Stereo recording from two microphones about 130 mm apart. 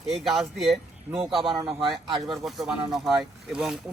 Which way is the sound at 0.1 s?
Centre (ahead or behind).